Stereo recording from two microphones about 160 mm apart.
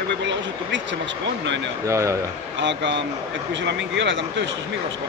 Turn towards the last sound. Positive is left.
turn(degrees=-90)